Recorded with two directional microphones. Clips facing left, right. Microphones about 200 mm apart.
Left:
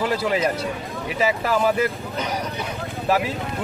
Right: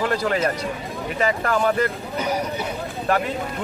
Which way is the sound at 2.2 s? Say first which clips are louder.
Right 3 dB; 10° right (ahead or behind).